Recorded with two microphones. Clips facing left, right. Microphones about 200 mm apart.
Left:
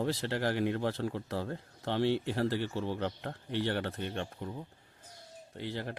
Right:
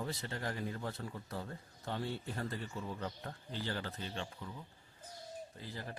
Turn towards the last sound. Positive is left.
turn(degrees=75)  # may be behind; listen again after turning